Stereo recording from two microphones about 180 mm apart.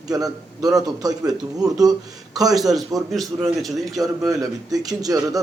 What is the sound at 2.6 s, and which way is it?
Speech, centre (ahead or behind).